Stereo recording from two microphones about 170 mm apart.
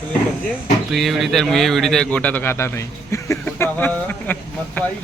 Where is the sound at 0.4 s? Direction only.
Centre (ahead or behind).